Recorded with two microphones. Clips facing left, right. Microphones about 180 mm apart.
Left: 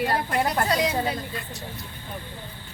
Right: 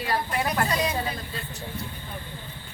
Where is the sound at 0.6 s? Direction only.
85° left.